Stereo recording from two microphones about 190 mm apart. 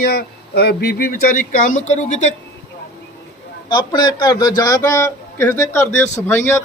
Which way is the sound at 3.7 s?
20° left (ahead or behind).